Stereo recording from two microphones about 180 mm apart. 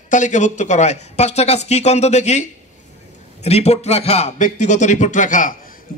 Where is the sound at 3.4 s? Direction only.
35° left (ahead or behind).